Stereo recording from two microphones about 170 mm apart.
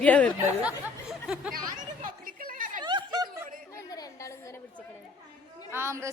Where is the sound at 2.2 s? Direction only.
55° right (ahead or behind).